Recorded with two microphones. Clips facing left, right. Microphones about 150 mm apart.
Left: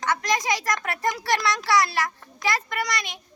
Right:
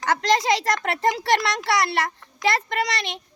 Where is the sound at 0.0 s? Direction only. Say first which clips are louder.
Right 4 dB; 30° right (ahead or behind).